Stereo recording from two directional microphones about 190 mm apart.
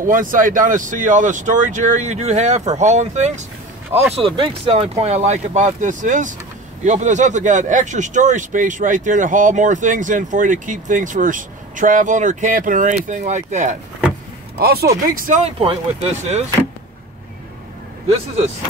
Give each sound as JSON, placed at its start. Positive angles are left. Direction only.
{"t": 0.0, "sound": "speech", "side_deg": -45}
{"t": 14.6, "sound": "speech", "side_deg": -55}